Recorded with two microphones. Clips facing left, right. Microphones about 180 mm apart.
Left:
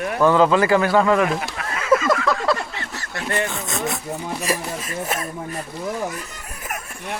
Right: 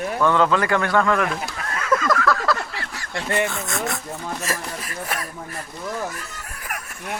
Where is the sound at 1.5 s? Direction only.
10° left (ahead or behind).